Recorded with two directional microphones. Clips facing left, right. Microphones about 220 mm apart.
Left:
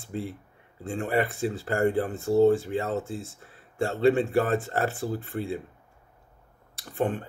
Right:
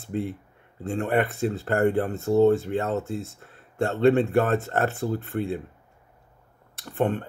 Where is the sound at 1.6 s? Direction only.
60° right (ahead or behind).